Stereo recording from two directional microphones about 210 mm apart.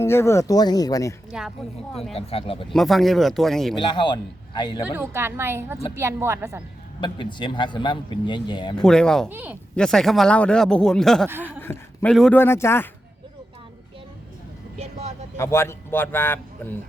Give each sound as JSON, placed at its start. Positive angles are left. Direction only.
{"t": 0.0, "sound": "speech", "side_deg": 10}
{"t": 1.3, "sound": "speech", "side_deg": 0}
{"t": 2.1, "sound": "speech", "side_deg": 25}
{"t": 2.7, "sound": "speech", "side_deg": 0}
{"t": 3.8, "sound": "speech", "side_deg": 20}
{"t": 4.9, "sound": "a woman's voice", "side_deg": -10}
{"t": 7.0, "sound": "speech", "side_deg": 20}
{"t": 8.7, "sound": "speech", "side_deg": 5}
{"t": 9.3, "sound": "a woman's voice", "side_deg": -10}
{"t": 9.7, "sound": "speech", "side_deg": 5}
{"t": 11.3, "sound": "a woman's voice", "side_deg": -10}
{"t": 11.6, "sound": "speech", "side_deg": 10}
{"t": 14.8, "sound": "speech", "side_deg": -30}
{"t": 15.4, "sound": "speech", "side_deg": 10}